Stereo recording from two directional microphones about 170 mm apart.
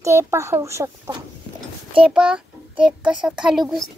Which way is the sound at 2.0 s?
5° right (ahead or behind).